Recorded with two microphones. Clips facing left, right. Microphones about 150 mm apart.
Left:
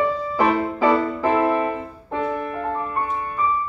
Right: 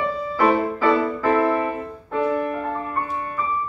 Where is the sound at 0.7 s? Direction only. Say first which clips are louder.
Left 1 dB; 20° left (ahead or behind).